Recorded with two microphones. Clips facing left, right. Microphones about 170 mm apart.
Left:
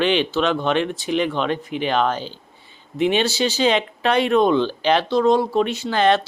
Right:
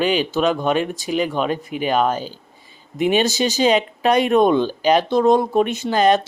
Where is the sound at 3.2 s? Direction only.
45° right (ahead or behind).